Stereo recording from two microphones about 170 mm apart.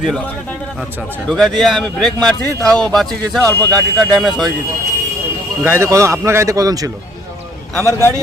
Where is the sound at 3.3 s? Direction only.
5° left (ahead or behind).